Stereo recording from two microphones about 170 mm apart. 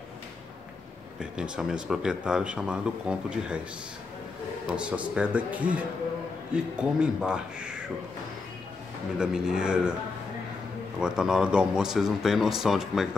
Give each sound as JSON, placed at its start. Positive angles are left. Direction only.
{"t": 1.2, "sound": "speech", "side_deg": -5}
{"t": 4.7, "sound": "a man's voice", "side_deg": -5}
{"t": 9.2, "sound": "speech", "side_deg": -5}
{"t": 11.0, "sound": "speech", "side_deg": -5}